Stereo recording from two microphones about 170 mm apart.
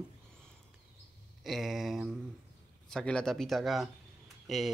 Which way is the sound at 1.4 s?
Centre (ahead or behind).